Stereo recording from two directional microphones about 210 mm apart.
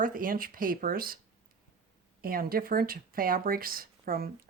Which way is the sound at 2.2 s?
45° right (ahead or behind).